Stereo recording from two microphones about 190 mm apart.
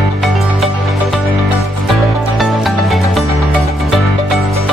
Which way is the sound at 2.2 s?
Centre (ahead or behind).